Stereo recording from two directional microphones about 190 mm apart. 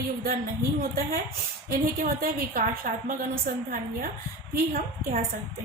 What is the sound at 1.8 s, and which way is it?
A woman's voice, 50° right (ahead or behind).